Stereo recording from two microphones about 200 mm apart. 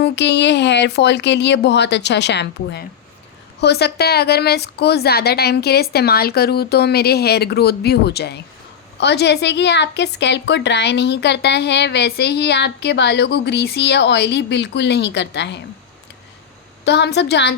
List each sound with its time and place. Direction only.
0.0 s a woman's voice: 60° left (ahead or behind)
16.8 s a woman's voice: 60° left (ahead or behind)